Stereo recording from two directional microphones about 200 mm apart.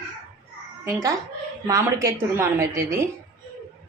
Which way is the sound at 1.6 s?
15° right (ahead or behind).